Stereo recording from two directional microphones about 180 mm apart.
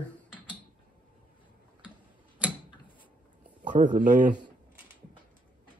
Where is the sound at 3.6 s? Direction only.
50° right (ahead or behind).